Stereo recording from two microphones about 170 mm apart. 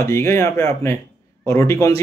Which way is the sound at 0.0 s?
15° left (ahead or behind).